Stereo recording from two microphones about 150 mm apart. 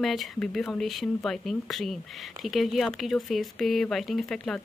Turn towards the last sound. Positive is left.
turn(degrees=5)  # may be behind; listen again after turning